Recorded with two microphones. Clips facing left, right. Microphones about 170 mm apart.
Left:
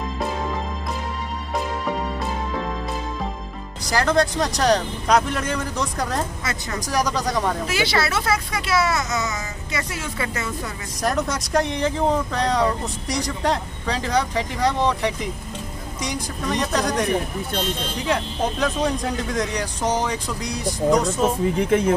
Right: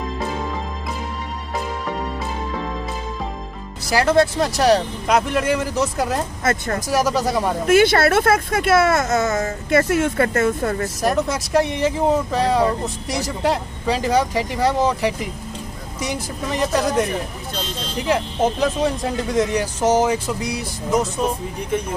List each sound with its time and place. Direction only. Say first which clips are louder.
1.5 s music: left 1 dB; centre (ahead or behind)
3.9 s speech: right 3 dB; 5° right (ahead or behind)
6.4 s speech: right 7 dB; 50° right (ahead or behind)
6.9 s speech: right 3 dB; 5° right (ahead or behind)
7.6 s speech: right 9 dB; 50° right (ahead or behind)
11.0 s speech: even; centre (ahead or behind)
18.0 s speech: right 4 dB; 5° right (ahead or behind)
21.5 s speech: left 6 dB; 90° left